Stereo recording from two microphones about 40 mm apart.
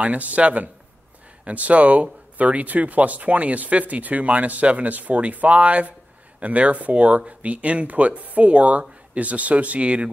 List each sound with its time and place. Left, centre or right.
0.0 s speech: right